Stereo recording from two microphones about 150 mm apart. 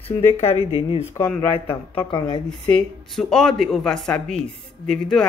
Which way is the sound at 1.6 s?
15° left (ahead or behind).